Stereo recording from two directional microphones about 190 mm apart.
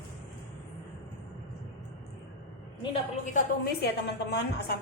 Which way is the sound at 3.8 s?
60° left (ahead or behind).